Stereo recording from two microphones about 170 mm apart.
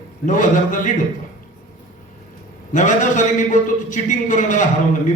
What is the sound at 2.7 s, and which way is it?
A man's voice, 45° left (ahead or behind).